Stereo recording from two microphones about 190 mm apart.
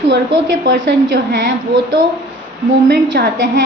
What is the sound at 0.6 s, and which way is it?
Speech, 60° right (ahead or behind).